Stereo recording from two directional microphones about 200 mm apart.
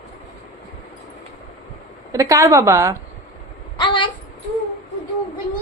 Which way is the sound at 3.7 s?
25° left (ahead or behind).